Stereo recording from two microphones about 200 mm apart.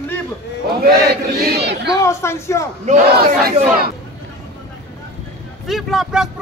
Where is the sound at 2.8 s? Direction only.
40° right (ahead or behind).